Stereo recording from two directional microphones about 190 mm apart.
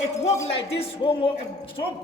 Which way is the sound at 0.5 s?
30° left (ahead or behind).